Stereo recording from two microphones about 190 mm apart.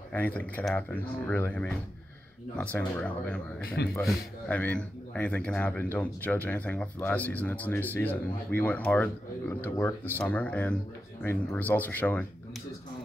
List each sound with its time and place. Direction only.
0.1 s speech: 10° left (ahead or behind)
3.6 s speech: 55° left (ahead or behind)
4.0 s speech: 5° left (ahead or behind)